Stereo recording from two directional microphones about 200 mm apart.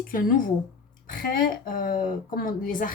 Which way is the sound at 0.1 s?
45° left (ahead or behind).